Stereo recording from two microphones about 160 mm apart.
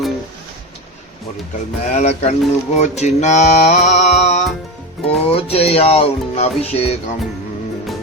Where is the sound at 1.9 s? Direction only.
45° left (ahead or behind).